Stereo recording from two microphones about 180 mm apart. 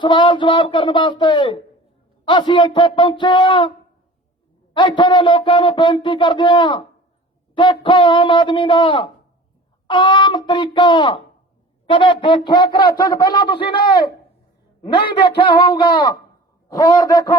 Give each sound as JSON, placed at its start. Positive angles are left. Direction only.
{"t": 0.0, "sound": "speech", "side_deg": 25}
{"t": 4.7, "sound": "speech", "side_deg": 25}